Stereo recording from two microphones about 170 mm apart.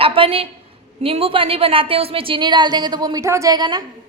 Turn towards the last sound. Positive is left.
turn(degrees=-25)  # may be behind; listen again after turning